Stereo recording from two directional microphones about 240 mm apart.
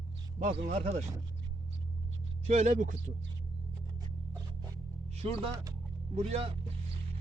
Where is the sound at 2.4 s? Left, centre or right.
Right.